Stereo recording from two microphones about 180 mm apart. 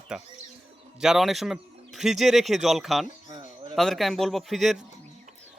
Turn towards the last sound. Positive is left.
turn(degrees=0)  # may be behind; listen again after turning